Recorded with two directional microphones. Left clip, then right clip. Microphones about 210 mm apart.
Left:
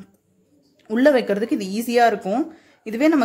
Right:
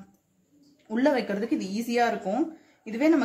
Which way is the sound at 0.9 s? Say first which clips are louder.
Left 8 dB; 50° left (ahead or behind).